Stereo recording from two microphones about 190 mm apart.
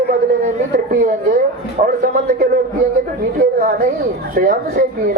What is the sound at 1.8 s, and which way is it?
Speech, 45° right (ahead or behind).